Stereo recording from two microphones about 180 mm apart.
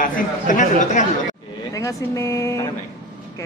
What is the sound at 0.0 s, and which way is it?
Speech, 45° left (ahead or behind).